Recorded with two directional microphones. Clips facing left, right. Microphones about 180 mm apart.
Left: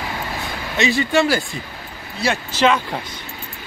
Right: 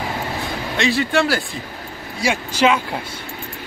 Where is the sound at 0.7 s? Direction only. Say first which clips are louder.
Left 1 dB; centre (ahead or behind).